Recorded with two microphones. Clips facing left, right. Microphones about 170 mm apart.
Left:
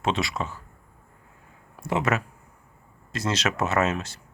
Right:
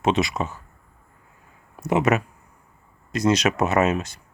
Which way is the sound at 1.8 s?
20° right (ahead or behind).